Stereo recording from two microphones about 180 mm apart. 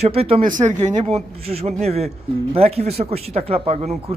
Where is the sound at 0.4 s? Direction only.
45° right (ahead or behind).